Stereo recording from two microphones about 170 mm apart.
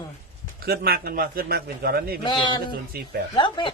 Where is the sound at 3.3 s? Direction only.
25° left (ahead or behind).